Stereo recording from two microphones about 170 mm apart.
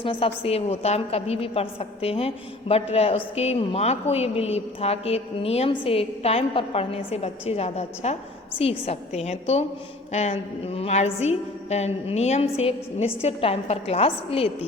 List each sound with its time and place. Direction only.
0.0 s a woman's voice: 30° left (ahead or behind)